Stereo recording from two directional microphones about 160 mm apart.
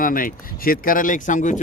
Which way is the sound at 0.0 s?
60° left (ahead or behind).